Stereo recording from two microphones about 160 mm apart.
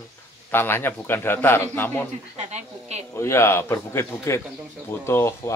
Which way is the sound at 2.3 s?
45° right (ahead or behind).